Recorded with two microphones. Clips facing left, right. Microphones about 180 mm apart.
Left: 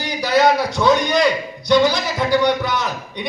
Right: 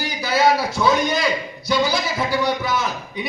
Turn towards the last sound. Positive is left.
turn(degrees=-5)  # may be behind; listen again after turning